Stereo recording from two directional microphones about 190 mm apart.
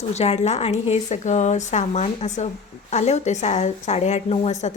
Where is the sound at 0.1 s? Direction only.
35° left (ahead or behind).